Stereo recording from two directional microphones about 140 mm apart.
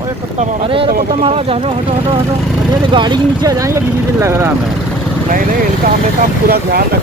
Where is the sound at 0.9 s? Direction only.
90° right.